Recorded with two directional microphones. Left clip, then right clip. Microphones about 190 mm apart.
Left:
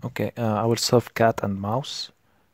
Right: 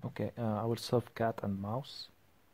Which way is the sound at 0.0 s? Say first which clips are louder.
Left 11 dB; 35° left (ahead or behind).